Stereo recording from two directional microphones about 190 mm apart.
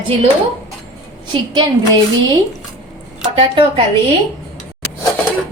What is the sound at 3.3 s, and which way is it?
Speech, 30° right (ahead or behind).